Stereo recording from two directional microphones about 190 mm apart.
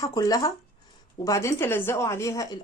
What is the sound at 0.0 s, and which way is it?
A woman's voice, 20° left (ahead or behind).